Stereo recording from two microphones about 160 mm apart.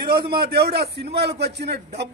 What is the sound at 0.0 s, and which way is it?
A man's voice, 75° right (ahead or behind).